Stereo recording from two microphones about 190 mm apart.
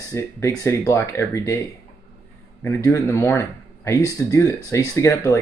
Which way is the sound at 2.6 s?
15° left (ahead or behind).